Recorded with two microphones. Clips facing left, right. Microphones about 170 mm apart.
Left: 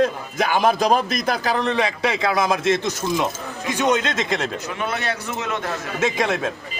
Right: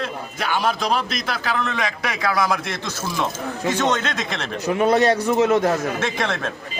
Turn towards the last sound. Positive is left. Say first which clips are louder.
# left 3 dB
turn(degrees=15)  # may be behind; listen again after turning